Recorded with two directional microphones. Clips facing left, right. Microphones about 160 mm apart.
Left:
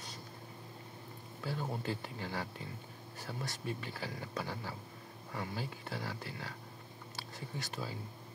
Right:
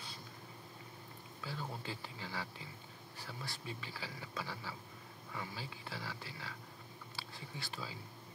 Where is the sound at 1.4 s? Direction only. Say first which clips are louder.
Left 6 dB; 50° left (ahead or behind).